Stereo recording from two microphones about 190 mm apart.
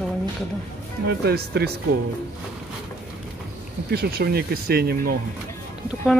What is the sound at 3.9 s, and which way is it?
Speech, 55° right (ahead or behind).